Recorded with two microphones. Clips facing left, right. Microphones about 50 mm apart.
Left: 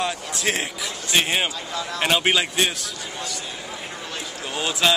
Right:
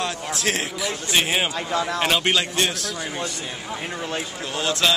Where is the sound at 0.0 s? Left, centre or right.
Centre.